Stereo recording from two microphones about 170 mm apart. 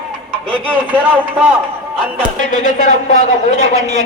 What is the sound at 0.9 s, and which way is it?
Speech, 10° right (ahead or behind).